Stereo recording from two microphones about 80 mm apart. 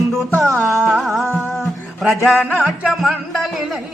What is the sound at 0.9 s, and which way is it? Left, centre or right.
Speech, centre.